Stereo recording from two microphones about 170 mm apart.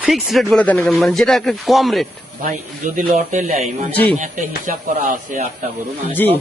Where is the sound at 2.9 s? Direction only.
45° right (ahead or behind).